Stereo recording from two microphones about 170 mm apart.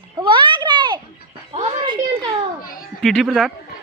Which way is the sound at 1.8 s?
25° right (ahead or behind).